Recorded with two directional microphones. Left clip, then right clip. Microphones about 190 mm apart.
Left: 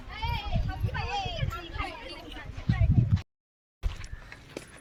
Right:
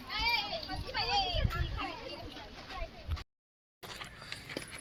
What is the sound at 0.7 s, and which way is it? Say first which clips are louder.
Children playing: even; 50° left (ahead or behind).